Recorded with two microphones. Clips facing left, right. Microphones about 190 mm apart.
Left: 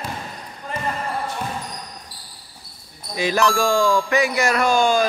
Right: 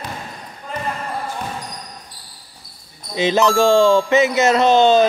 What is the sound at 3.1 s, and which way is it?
Speech, 20° right (ahead or behind).